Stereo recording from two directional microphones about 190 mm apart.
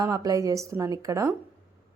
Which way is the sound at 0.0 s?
20° right (ahead or behind).